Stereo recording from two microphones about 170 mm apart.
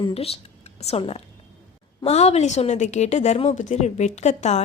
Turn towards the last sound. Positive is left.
turn(degrees=40)  # may be behind; listen again after turning